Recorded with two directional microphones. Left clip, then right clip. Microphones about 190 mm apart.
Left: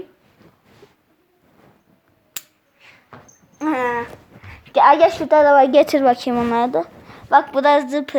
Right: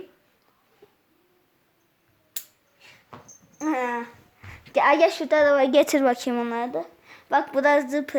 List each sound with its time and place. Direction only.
3.6 s a sound: 20° left (ahead or behind)
4.4 s a woman's voice: 10° right (ahead or behind)
6.5 s speech: 30° left (ahead or behind)
7.3 s a woman's voice: centre (ahead or behind)